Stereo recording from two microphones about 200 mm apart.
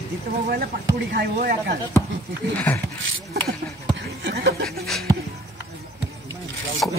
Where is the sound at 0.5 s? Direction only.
50° right (ahead or behind).